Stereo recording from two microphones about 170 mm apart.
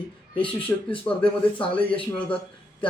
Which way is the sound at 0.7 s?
15° left (ahead or behind).